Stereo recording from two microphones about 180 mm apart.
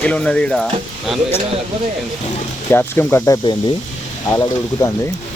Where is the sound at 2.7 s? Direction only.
10° left (ahead or behind).